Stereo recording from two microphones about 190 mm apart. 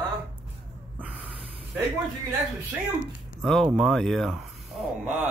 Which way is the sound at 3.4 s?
Centre (ahead or behind).